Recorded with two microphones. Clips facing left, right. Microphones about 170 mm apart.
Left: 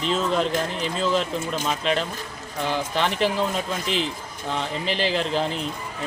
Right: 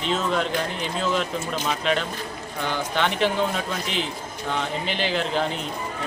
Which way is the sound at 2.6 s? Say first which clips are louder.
Left 1 dB; centre (ahead or behind).